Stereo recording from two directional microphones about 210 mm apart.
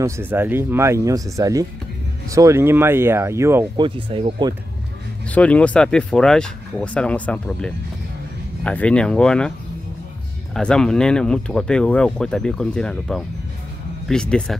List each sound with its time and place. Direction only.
0.0 s speech: 10° right (ahead or behind)
3.8 s speech: 25° right (ahead or behind)
5.3 s speech: 5° left (ahead or behind)
10.5 s speech: 5° left (ahead or behind)